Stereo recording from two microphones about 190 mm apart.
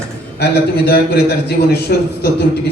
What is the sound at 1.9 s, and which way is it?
Speech, 55° left (ahead or behind).